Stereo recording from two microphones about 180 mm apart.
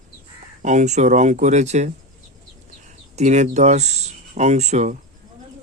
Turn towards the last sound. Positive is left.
turn(degrees=-40)  # may be behind; listen again after turning